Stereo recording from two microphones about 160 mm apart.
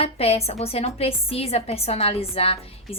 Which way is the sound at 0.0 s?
40° left (ahead or behind).